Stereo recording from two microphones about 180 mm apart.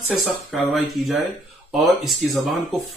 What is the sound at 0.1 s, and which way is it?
Speech, centre (ahead or behind).